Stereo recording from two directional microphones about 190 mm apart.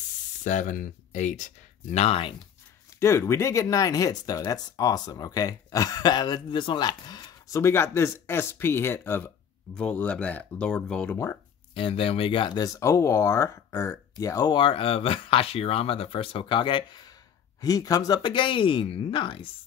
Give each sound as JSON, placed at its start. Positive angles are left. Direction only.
{"t": 0.4, "sound": "speech", "side_deg": 40}
{"t": 3.0, "sound": "speech", "side_deg": 15}
{"t": 11.7, "sound": "speech", "side_deg": 30}